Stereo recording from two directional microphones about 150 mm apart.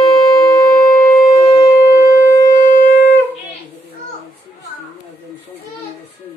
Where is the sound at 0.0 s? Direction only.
25° left (ahead or behind).